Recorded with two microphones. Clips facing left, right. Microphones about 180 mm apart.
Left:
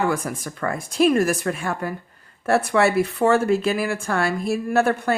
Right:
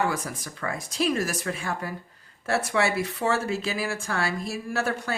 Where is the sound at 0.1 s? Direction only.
55° left (ahead or behind).